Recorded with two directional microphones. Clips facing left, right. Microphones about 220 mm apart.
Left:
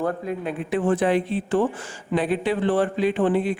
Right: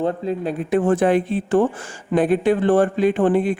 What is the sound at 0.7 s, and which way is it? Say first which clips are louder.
Speech: right 4 dB; 45° right (ahead or behind).